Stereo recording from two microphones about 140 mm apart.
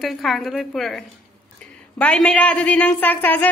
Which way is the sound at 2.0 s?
5° left (ahead or behind).